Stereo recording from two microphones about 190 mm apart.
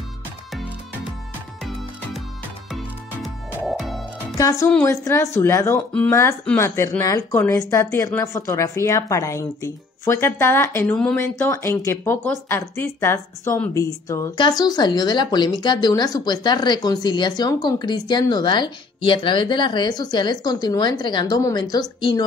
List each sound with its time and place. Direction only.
2.7 s music: centre (ahead or behind)
4.4 s speech: 20° left (ahead or behind)